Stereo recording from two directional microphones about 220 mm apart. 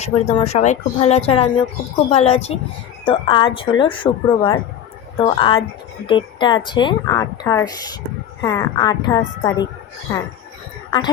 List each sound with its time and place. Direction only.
0.0 s a woman's voice: 30° left (ahead or behind)